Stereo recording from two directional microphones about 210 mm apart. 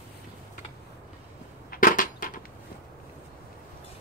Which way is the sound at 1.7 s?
40° left (ahead or behind).